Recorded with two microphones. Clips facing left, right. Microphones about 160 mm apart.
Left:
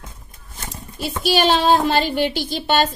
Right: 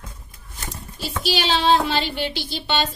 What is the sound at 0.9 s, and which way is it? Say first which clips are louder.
A woman's voice: left 5 dB; 55° left (ahead or behind).